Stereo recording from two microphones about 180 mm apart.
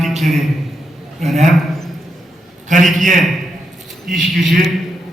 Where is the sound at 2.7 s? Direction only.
45° right (ahead or behind).